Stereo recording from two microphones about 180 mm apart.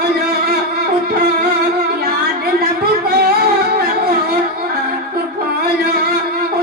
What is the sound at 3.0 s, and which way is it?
Music, 60° right (ahead or behind).